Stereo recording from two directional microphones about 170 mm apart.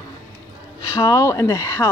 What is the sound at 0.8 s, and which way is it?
Speech, 20° left (ahead or behind).